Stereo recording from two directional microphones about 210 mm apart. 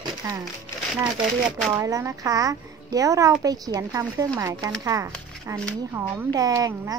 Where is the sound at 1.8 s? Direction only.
15° right (ahead or behind).